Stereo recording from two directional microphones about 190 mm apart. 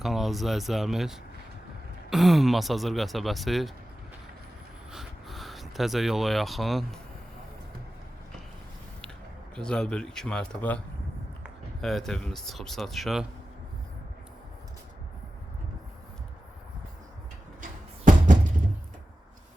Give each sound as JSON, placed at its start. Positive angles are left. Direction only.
{"t": 0.0, "sound": "speech", "side_deg": 0}
{"t": 4.9, "sound": "speech", "side_deg": 0}
{"t": 9.6, "sound": "speech", "side_deg": 5}
{"t": 17.6, "sound": "music", "side_deg": -45}